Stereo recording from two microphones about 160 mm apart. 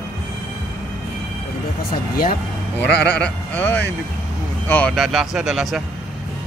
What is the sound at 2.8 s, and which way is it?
Speech, 10° left (ahead or behind).